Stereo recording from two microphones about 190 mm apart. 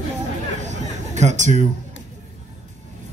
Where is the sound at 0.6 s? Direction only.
40° right (ahead or behind).